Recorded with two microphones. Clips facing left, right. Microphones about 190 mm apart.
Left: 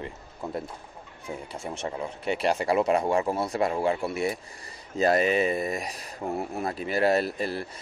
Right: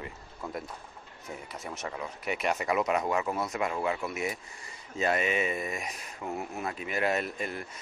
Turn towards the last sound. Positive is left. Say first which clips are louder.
# left 6 dB
turn(degrees=35)  # may be behind; listen again after turning